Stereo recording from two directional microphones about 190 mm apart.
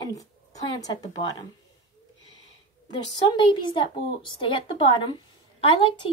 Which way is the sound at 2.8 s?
25° left (ahead or behind).